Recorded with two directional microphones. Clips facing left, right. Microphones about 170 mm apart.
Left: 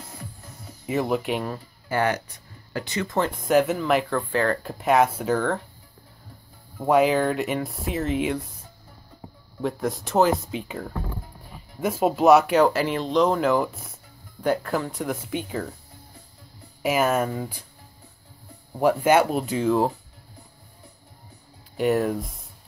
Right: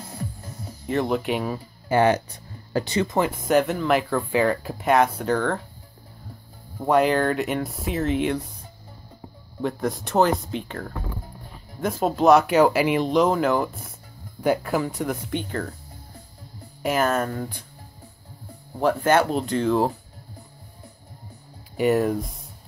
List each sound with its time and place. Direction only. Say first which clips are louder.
0.8 s speech: right 1 dB; 5° left (ahead or behind)
1.9 s speech: right 5 dB; 25° right (ahead or behind)
3.1 s speech: right 1 dB; 10° right (ahead or behind)
4.3 s speech: right 5 dB; 10° right (ahead or behind)
6.8 s speech: even; 5° left (ahead or behind)
9.6 s speech: right 1 dB; centre (ahead or behind)
16.8 s speech: left 1 dB; 5° left (ahead or behind)
18.8 s speech: left 1 dB; 10° left (ahead or behind)
21.7 s speech: right 2 dB; centre (ahead or behind)